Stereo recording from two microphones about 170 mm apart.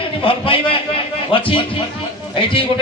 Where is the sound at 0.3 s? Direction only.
30° left (ahead or behind).